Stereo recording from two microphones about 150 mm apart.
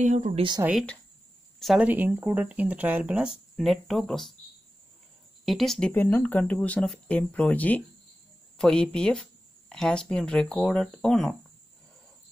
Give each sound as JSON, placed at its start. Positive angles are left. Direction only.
{"t": 0.0, "sound": "speech", "side_deg": -55}
{"t": 1.6, "sound": "speech", "side_deg": -5}
{"t": 5.4, "sound": "speech", "side_deg": 0}